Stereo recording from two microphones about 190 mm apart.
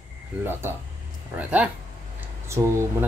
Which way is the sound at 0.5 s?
10° right (ahead or behind).